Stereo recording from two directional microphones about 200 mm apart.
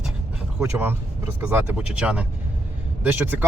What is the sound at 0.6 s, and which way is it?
Speech, 10° right (ahead or behind).